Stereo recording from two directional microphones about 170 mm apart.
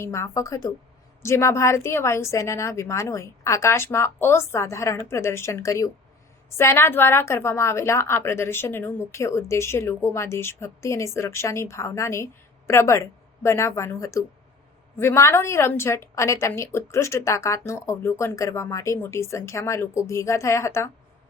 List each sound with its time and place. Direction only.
0.0 s a woman's voice: 15° left (ahead or behind)